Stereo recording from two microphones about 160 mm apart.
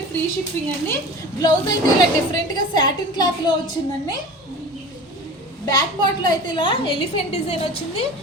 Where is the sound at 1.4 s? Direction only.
25° left (ahead or behind).